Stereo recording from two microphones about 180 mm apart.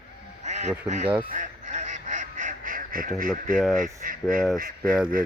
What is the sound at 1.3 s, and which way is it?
Duck, 45° right (ahead or behind).